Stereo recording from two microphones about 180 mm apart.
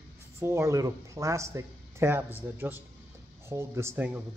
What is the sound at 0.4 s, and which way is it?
Speech, 15° right (ahead or behind).